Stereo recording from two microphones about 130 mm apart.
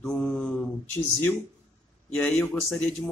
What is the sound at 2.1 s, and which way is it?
Speech, 15° left (ahead or behind).